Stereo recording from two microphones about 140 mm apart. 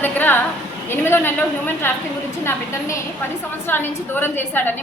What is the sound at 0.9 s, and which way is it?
A woman's voice, 15° left (ahead or behind).